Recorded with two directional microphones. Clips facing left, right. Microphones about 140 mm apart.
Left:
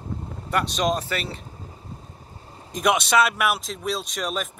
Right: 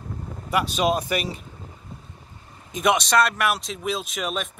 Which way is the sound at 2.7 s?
Centre (ahead or behind).